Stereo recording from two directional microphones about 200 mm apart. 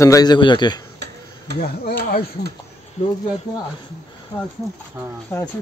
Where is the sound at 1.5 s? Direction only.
55° right (ahead or behind).